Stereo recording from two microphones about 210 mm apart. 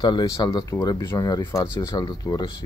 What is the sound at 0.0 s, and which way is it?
Speech, 20° left (ahead or behind).